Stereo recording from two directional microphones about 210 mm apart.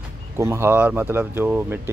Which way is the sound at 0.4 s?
10° right (ahead or behind).